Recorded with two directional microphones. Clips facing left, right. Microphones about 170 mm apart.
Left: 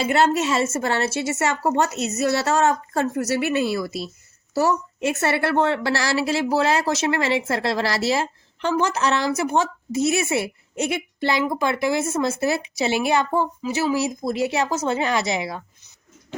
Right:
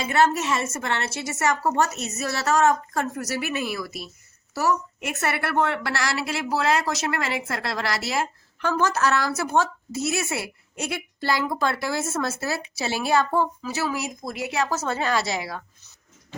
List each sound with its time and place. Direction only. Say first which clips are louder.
0.0 s speech: left 2 dB; 30° left (ahead or behind)